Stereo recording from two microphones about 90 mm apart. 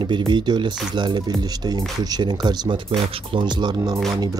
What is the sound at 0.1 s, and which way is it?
Speech, 60° right (ahead or behind).